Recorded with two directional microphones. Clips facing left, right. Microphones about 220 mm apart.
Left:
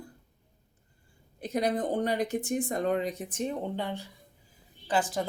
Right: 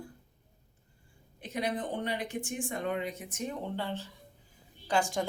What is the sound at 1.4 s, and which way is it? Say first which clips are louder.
Speech: left 5 dB; 40° left (ahead or behind).